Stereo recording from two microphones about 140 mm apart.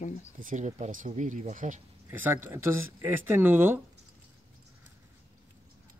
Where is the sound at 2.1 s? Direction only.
15° right (ahead or behind).